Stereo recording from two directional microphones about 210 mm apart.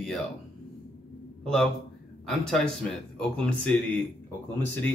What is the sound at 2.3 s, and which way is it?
Speech, centre (ahead or behind).